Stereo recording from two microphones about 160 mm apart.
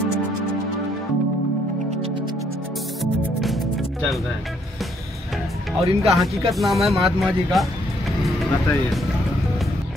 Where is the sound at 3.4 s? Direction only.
Centre (ahead or behind).